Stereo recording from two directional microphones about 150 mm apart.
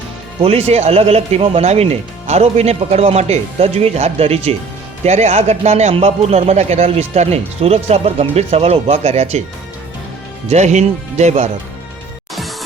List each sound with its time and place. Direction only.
0.4 s a man's voice: 45° right (ahead or behind)
10.5 s a man's voice: 50° right (ahead or behind)
12.3 s music: centre (ahead or behind)